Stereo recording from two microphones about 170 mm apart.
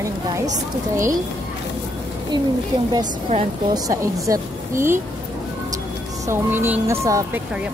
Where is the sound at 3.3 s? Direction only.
40° right (ahead or behind).